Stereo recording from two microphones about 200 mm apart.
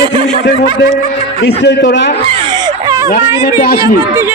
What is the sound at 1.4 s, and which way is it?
Speech, 55° left (ahead or behind).